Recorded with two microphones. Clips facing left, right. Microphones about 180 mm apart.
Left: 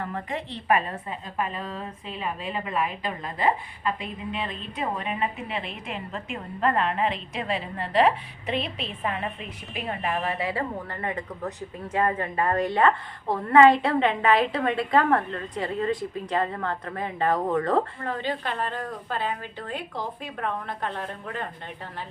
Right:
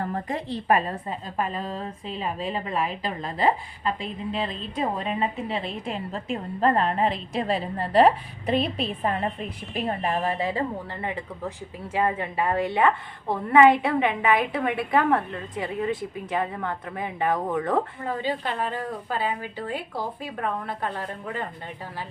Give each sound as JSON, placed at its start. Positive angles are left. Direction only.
{"t": 0.0, "sound": "a woman's voice", "side_deg": -35}
{"t": 11.9, "sound": "a woman's voice", "side_deg": -10}